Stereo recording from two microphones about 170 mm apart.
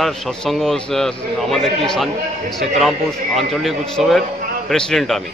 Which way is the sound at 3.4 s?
Centre (ahead or behind).